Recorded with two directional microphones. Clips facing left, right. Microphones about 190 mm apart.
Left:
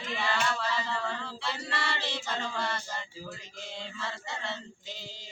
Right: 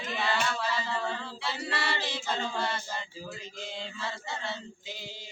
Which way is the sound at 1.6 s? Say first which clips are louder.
Right 4 dB; 5° right (ahead or behind).